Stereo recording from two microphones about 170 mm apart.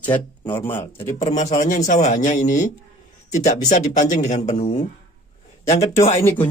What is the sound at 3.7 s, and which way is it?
A man's voice, 45° left (ahead or behind).